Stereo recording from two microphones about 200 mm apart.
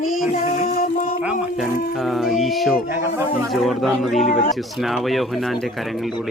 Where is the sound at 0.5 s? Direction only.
45° left (ahead or behind).